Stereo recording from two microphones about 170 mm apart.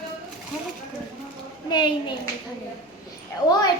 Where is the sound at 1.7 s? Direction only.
25° left (ahead or behind).